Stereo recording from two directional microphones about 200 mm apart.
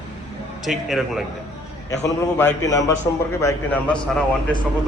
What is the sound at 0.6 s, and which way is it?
Speech, centre (ahead or behind).